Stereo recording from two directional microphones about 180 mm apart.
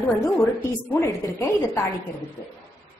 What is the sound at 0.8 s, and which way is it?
A woman's voice, 15° left (ahead or behind).